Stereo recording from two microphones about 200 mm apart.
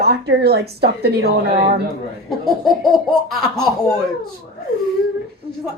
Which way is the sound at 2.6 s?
Centre (ahead or behind).